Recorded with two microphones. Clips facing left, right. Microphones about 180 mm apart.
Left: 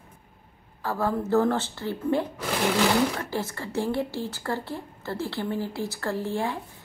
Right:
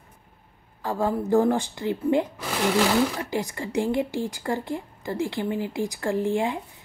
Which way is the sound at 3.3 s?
15° right (ahead or behind).